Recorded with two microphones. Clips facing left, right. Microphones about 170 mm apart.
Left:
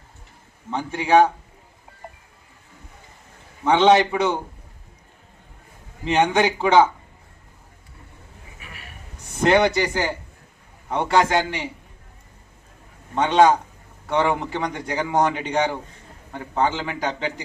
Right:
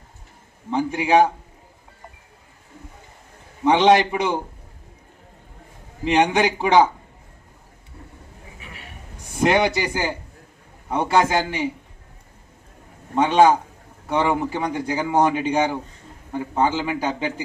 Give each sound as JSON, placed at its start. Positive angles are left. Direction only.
{"t": 0.7, "sound": "a man's voice", "side_deg": -10}
{"t": 3.6, "sound": "a man's voice", "side_deg": -15}
{"t": 6.1, "sound": "a man's voice", "side_deg": -10}
{"t": 8.6, "sound": "a sound", "side_deg": -25}
{"t": 9.4, "sound": "a man's voice", "side_deg": -10}
{"t": 13.1, "sound": "a man's voice", "side_deg": -10}